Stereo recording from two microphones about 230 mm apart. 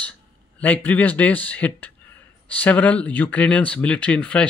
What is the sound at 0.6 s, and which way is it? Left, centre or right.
Speech, centre.